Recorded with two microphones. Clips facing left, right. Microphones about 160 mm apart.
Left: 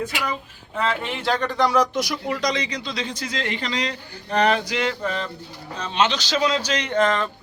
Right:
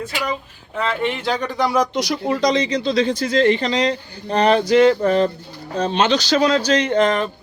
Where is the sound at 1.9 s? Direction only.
85° right.